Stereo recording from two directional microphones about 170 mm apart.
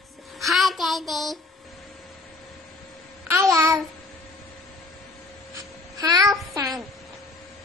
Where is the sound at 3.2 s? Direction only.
15° right (ahead or behind).